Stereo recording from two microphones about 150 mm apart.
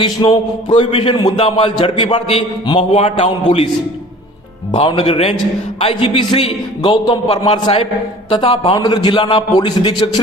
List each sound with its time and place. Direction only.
0.0 s a man's voice: 35° left (ahead or behind)
4.7 s a man's voice: 40° left (ahead or behind)
8.7 s a man's voice: 25° left (ahead or behind)